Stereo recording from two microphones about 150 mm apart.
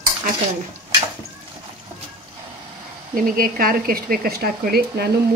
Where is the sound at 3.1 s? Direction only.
70° right (ahead or behind).